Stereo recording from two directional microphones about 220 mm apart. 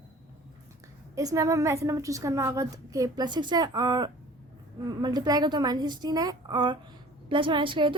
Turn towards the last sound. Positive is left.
turn(degrees=-20)  # may be behind; listen again after turning